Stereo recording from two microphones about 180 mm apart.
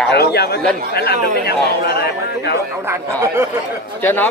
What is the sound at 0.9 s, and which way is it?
A man's voice, 60° left (ahead or behind).